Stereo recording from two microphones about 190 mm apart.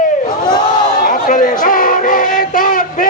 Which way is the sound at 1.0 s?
45° left (ahead or behind).